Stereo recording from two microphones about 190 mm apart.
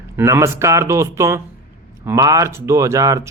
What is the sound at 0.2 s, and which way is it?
Speech, 15° right (ahead or behind).